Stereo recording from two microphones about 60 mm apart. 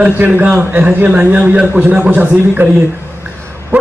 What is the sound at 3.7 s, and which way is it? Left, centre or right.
Bow-wow, right.